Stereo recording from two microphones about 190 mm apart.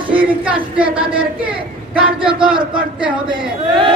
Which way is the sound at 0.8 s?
25° right (ahead or behind).